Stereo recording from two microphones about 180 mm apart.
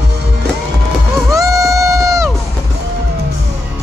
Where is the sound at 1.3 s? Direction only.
20° right (ahead or behind).